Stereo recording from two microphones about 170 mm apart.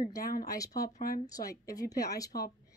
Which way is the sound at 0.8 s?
60° left (ahead or behind).